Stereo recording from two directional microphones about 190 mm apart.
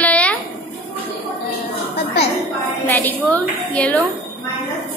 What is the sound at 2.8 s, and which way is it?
A woman's voice, 10° left (ahead or behind).